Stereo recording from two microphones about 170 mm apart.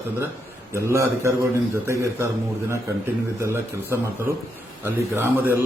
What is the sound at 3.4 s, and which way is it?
Speech, 15° right (ahead or behind).